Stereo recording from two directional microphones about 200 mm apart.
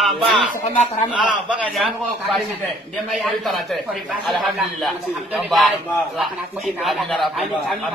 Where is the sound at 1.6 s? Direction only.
Centre (ahead or behind).